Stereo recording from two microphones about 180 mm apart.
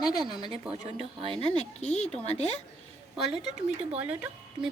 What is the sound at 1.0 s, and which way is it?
Speech, 30° right (ahead or behind).